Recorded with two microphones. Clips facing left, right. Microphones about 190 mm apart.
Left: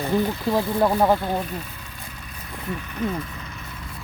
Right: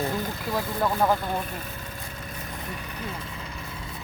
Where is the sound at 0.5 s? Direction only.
35° left (ahead or behind).